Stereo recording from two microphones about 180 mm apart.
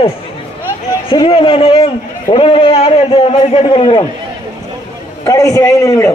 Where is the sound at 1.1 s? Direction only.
30° left (ahead or behind).